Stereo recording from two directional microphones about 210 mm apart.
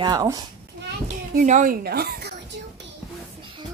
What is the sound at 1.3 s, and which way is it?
Speech, 35° right (ahead or behind).